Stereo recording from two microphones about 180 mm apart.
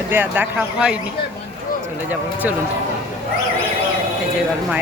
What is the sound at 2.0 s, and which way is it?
Speech, 10° right (ahead or behind).